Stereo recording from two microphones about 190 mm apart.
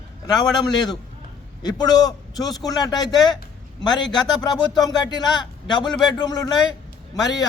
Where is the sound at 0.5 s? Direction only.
20° left (ahead or behind).